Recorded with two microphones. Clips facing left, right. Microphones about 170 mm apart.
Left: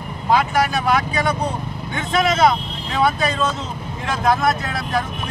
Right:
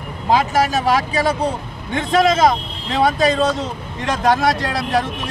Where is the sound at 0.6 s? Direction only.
40° right (ahead or behind).